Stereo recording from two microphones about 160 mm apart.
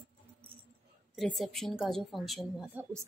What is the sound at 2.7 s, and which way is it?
Speech, 15° right (ahead or behind).